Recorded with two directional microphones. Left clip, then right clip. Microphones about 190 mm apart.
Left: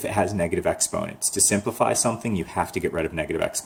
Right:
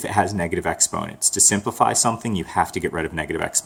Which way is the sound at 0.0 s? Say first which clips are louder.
Right 2 dB; 20° right (ahead or behind).